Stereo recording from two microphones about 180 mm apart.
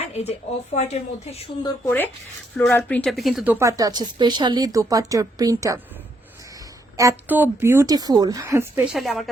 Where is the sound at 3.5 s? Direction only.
20° right (ahead or behind).